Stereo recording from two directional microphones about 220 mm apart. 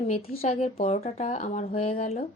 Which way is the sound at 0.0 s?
35° left (ahead or behind).